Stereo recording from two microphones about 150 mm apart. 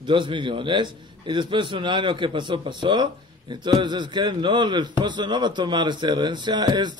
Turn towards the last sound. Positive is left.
turn(degrees=-30)  # may be behind; listen again after turning